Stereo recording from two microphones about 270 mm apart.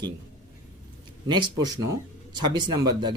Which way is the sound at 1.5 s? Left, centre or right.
Centre.